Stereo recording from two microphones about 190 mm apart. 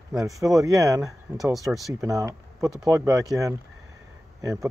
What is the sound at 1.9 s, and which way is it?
Speech, 15° right (ahead or behind).